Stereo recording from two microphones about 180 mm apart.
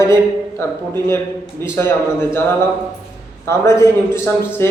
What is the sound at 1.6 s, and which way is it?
A man's voice, 15° left (ahead or behind).